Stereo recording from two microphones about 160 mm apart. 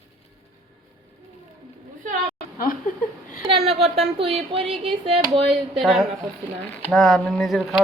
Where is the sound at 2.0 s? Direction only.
50° right (ahead or behind).